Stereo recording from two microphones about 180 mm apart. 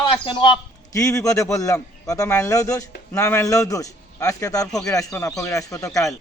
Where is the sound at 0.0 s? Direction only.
25° left (ahead or behind).